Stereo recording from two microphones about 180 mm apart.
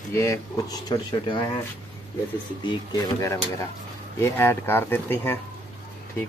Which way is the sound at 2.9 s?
20° left (ahead or behind).